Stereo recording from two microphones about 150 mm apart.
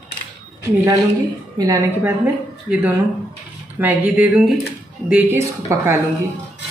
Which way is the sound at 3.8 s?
10° right (ahead or behind).